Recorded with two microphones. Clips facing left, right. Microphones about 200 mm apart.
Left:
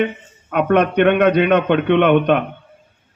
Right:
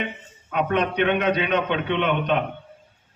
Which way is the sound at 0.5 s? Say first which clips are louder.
Left 7 dB; 55° left (ahead or behind).